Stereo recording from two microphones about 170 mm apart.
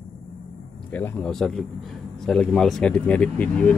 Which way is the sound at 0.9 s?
10° left (ahead or behind).